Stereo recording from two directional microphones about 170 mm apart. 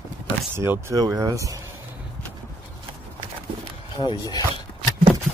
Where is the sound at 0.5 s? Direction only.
15° right (ahead or behind).